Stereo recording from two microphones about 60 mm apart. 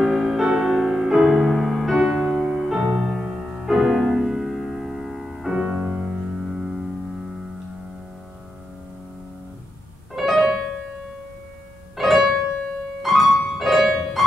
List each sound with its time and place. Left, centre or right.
0.0 s music: centre
5.5 s music: centre
6.4 s music: centre
10.1 s piano: centre
12.0 s music: centre